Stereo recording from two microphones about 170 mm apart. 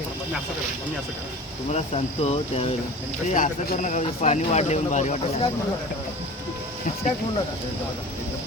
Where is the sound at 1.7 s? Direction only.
40° left (ahead or behind).